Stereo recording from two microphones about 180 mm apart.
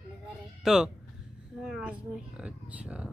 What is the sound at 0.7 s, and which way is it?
Speech, 5° right (ahead or behind).